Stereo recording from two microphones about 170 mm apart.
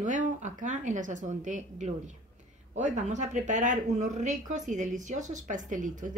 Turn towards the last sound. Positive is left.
turn(degrees=-50)  # may be behind; listen again after turning